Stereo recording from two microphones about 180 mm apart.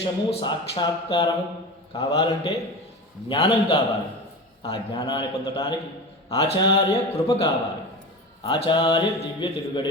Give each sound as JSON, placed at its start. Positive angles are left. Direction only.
{"t": 0.0, "sound": "a man's voice", "side_deg": 35}
{"t": 6.2, "sound": "a man's voice", "side_deg": 35}